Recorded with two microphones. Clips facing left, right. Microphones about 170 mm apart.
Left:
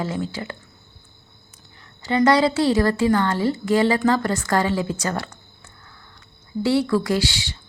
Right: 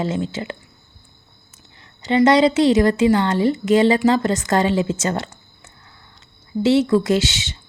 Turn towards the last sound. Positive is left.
turn(degrees=-20)  # may be behind; listen again after turning